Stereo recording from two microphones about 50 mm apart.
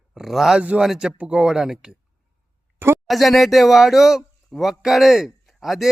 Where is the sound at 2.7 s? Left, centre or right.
Right.